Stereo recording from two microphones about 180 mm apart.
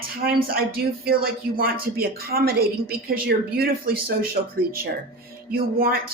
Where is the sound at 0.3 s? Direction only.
55° right (ahead or behind).